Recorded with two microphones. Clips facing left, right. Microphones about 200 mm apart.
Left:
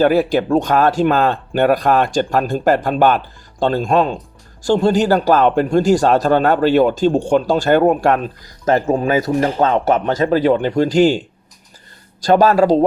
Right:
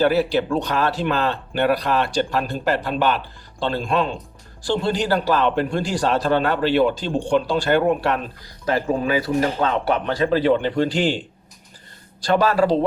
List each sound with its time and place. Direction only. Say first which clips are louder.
0.0 s a man's voice: left 4 dB; 45° left (ahead or behind)
12.2 s a man's voice: left 6 dB; 45° left (ahead or behind)